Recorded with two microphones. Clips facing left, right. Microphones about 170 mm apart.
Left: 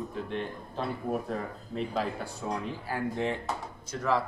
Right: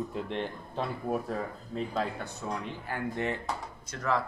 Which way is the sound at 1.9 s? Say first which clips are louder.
Left 1 dB; 10° left (ahead or behind).